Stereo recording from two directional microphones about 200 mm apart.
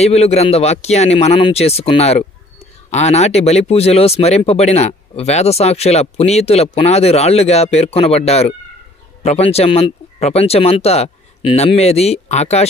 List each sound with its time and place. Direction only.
0.0 s speech: 30° left (ahead or behind)